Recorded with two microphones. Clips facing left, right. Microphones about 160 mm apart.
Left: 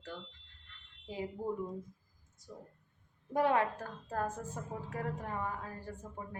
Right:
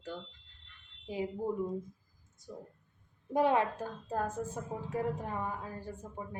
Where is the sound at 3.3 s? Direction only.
20° right (ahead or behind).